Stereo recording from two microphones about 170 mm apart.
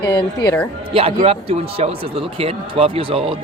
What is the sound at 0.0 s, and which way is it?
Speech, 25° left (ahead or behind).